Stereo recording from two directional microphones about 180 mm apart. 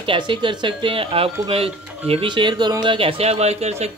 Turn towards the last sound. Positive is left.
turn(degrees=-35)  # may be behind; listen again after turning